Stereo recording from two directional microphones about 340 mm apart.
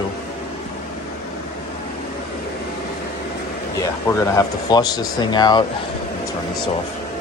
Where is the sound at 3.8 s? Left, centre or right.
Centre.